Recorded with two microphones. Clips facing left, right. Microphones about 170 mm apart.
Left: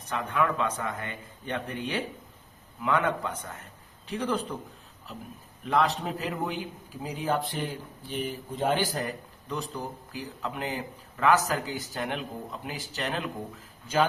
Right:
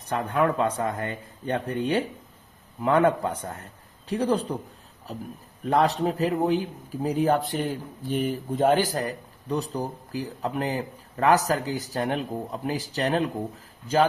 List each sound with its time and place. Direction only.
0.1 s a man's voice: 40° right (ahead or behind)
5.6 s a man's voice: 40° right (ahead or behind)